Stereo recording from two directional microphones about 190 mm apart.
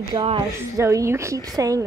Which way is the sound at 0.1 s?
25° right (ahead or behind).